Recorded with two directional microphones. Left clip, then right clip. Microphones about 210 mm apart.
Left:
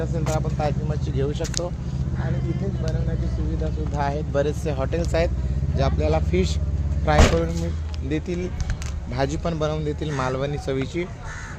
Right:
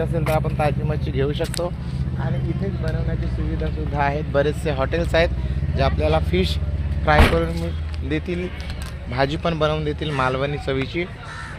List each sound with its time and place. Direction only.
0.3 s speech: 45° right (ahead or behind)
3.9 s speech: 30° right (ahead or behind); by 5.3 s 10° right (ahead or behind)
5.7 s speech: 5° left (ahead or behind)